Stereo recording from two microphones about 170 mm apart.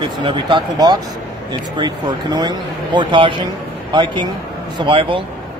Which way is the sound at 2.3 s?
25° right (ahead or behind).